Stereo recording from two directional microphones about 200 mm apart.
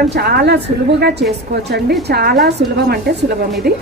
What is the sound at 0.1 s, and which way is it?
A woman's voice, 55° right (ahead or behind).